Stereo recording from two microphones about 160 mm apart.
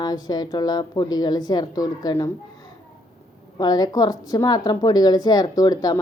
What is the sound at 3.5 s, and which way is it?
A woman's voice, 25° left (ahead or behind).